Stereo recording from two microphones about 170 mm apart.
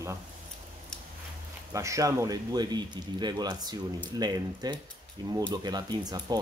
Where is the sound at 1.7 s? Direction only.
20° right (ahead or behind).